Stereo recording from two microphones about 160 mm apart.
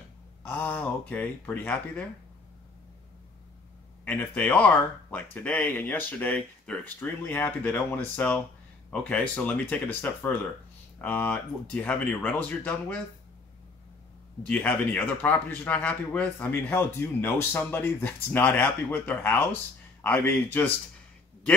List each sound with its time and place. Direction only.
0.4 s a man's voice: 10° left (ahead or behind)
4.0 s a man's voice: 10° left (ahead or behind)
11.0 s a man's voice: 10° left (ahead or behind)
14.5 s a man's voice: 10° left (ahead or behind)